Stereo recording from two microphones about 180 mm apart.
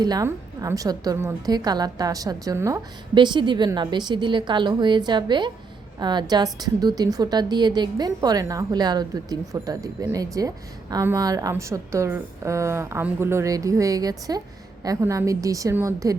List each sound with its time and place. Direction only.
0.0 s a woman's voice: 20° right (ahead or behind)